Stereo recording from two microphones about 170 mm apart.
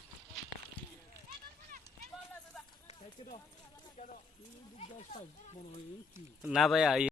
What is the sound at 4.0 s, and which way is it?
Speech, 35° left (ahead or behind).